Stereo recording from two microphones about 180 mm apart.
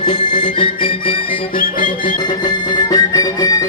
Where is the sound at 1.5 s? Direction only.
50° left (ahead or behind).